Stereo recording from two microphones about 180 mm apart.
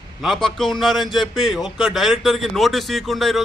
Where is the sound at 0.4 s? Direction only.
Centre (ahead or behind).